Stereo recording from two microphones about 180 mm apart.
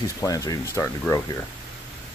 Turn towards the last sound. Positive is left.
turn(degrees=15)  # may be behind; listen again after turning